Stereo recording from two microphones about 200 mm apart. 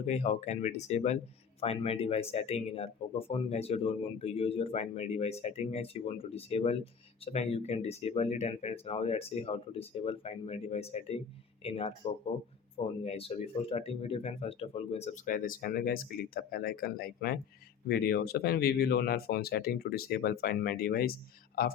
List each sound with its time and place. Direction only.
0.0 s speech: 35° left (ahead or behind)